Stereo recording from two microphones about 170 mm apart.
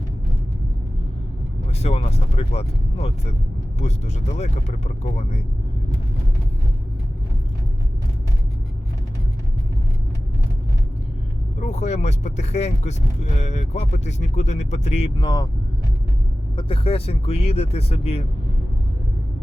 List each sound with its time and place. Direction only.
1.8 s speech: 35° left (ahead or behind)
11.6 s speech: 40° left (ahead or behind); by 15.4 s 25° left (ahead or behind)
16.6 s speech: 30° left (ahead or behind)